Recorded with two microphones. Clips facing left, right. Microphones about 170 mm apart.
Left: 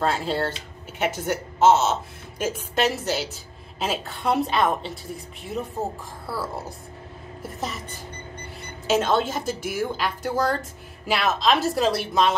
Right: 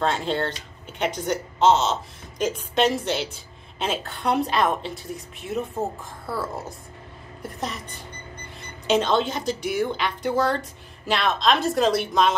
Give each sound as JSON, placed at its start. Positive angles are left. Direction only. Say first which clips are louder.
{"t": 0.0, "sound": "a woman's voice", "louder": "even", "side_deg": 5}
{"t": 8.8, "sound": "a woman's voice", "louder": "even", "side_deg": 5}